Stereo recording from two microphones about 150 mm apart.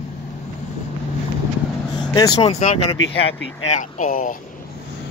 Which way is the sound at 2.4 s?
45° left (ahead or behind).